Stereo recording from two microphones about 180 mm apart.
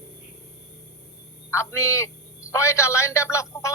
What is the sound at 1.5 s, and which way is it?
Speech, 15° left (ahead or behind).